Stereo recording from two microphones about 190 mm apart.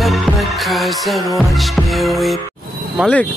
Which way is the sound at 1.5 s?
Centre (ahead or behind).